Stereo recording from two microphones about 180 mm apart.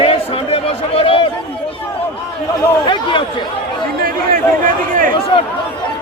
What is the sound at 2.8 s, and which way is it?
Chatter, 25° left (ahead or behind).